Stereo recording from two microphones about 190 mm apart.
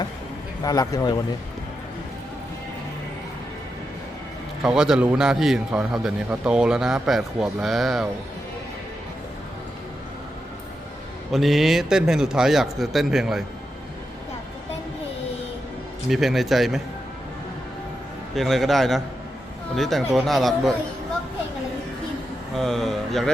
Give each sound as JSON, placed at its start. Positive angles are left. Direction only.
{"t": 0.6, "sound": "speech", "side_deg": 20}
{"t": 4.6, "sound": "a man's voice", "side_deg": -5}
{"t": 11.3, "sound": "a man's voice", "side_deg": 0}
{"t": 16.0, "sound": "a man's voice", "side_deg": 0}
{"t": 18.3, "sound": "a man's voice", "side_deg": 0}
{"t": 22.5, "sound": "a sound", "side_deg": 0}